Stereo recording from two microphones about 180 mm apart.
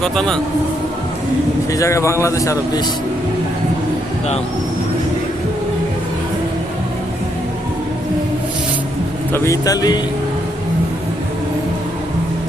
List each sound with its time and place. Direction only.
0.0 s speech: 5° left (ahead or behind)
1.7 s speech: 15° left (ahead or behind)
9.3 s speech: 15° left (ahead or behind)